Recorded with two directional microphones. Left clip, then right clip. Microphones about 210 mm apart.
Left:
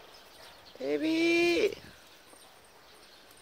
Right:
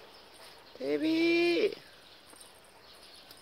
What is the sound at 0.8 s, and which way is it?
Speech, 5° left (ahead or behind).